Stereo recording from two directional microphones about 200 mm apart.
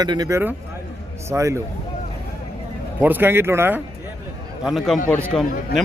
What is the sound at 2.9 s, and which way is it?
Speech, 10° right (ahead or behind).